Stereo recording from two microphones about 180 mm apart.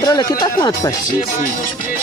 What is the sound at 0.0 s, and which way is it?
Speech, 20° left (ahead or behind).